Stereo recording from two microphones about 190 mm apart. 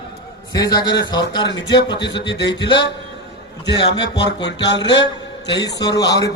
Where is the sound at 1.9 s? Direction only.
65° left (ahead or behind).